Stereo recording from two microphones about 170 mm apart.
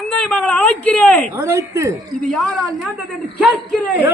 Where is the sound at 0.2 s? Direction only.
5° left (ahead or behind).